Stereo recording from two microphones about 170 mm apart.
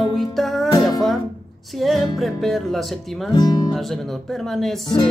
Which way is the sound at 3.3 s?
25° left (ahead or behind).